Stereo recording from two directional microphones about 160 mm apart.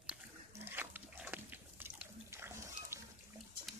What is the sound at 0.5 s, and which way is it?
Pig, 15° right (ahead or behind).